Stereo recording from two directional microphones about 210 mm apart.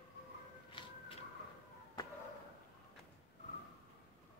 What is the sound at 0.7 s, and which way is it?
Siren, 25° left (ahead or behind).